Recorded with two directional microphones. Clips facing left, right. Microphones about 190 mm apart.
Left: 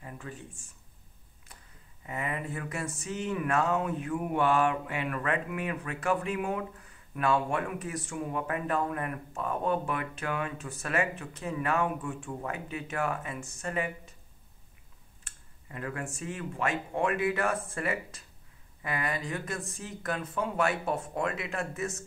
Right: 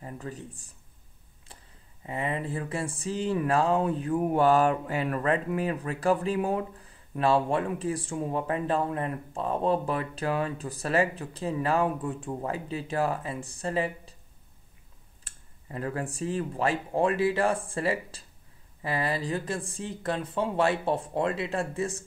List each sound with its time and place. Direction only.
0.0 s speech: 35° right (ahead or behind)
2.0 s speech: 30° right (ahead or behind)
15.2 s speech: 35° right (ahead or behind)